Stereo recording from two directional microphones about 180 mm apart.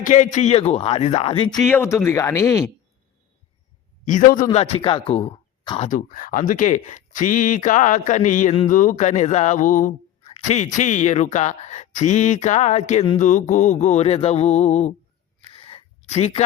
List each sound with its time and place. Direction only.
0.0 s speech: 45° left (ahead or behind)
1.5 s speech: 10° left (ahead or behind)
4.0 s speech: 45° left (ahead or behind)
4.5 s speech: 35° left (ahead or behind)
5.9 s speech: 50° left (ahead or behind)
15.4 s a sound: 30° left (ahead or behind)